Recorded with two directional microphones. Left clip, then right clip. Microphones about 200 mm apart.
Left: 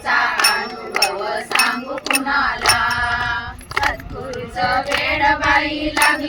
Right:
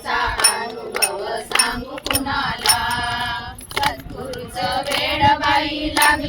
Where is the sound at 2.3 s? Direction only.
5° right (ahead or behind).